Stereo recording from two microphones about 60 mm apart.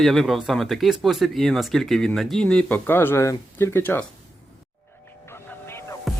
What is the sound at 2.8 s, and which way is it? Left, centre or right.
Speech, left.